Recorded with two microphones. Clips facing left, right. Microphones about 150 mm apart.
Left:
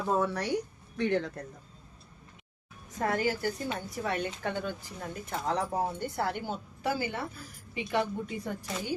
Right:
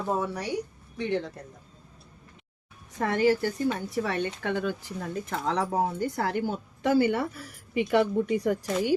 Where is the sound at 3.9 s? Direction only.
90° right.